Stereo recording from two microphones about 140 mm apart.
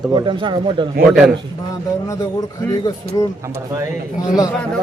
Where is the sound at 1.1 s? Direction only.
Centre (ahead or behind).